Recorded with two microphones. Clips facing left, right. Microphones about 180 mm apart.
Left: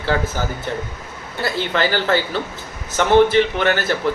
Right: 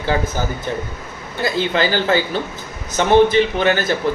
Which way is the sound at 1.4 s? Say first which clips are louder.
Right 2 dB; 15° right (ahead or behind).